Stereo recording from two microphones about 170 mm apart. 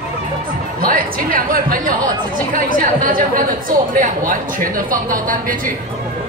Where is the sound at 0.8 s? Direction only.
55° right (ahead or behind).